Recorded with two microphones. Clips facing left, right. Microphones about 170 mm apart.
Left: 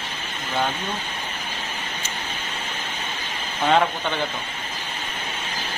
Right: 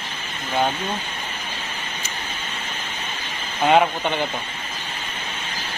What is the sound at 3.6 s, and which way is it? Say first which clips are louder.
Speech: right 3 dB; 20° right (ahead or behind).